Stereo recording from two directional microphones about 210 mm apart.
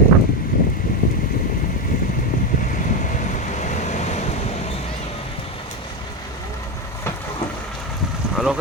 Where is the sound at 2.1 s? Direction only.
40° left (ahead or behind).